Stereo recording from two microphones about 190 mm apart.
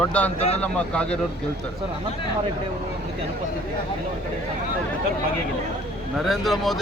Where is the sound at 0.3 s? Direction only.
35° left (ahead or behind).